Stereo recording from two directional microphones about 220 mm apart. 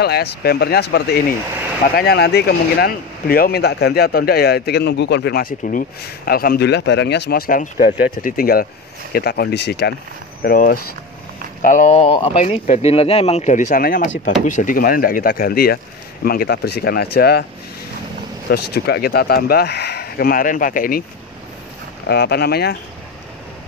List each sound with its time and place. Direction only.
0.0 s speech: 45° left (ahead or behind)
18.5 s speech: 45° left (ahead or behind)
22.0 s speech: 45° left (ahead or behind)